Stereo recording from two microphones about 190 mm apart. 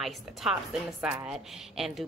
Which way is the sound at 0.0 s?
Centre (ahead or behind).